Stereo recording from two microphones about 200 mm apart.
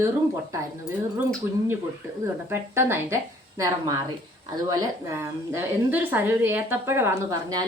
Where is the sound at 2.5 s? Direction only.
10° right (ahead or behind).